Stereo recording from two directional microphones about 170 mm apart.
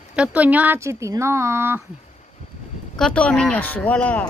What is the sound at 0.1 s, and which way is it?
Speech, 10° right (ahead or behind).